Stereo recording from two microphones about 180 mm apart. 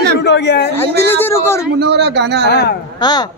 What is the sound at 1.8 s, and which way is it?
Speech, 70° right (ahead or behind).